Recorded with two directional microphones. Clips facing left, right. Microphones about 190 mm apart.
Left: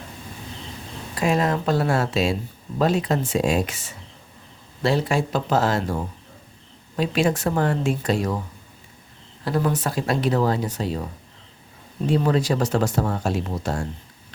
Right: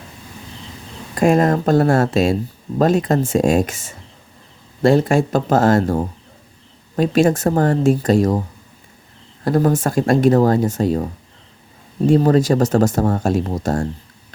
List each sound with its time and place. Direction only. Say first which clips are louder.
1.1 s speech: right 7 dB; 50° right (ahead or behind)
9.4 s speech: right 7 dB; 45° right (ahead or behind)